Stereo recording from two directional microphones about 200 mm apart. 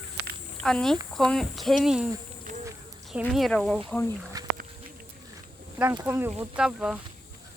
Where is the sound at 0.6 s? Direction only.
5° left (ahead or behind).